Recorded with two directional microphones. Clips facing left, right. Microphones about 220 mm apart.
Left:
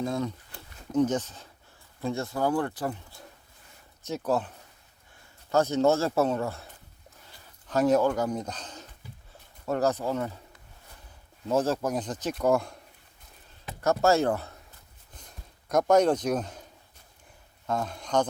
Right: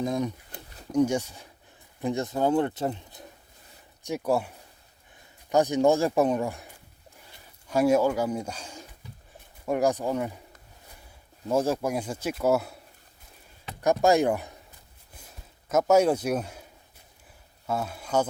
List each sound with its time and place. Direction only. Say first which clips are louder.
0.0 s speech: right 2 dB; 15° right (ahead or behind)
11.4 s speech: right 1 dB; 10° right (ahead or behind)
13.8 s speech: right 2 dB; 15° right (ahead or behind)
15.1 s a sound: even; 5° right (ahead or behind)
17.7 s speech: even; 5° right (ahead or behind)